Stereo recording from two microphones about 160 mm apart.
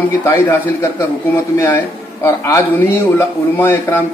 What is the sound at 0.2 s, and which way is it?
A man's voice, 15° left (ahead or behind).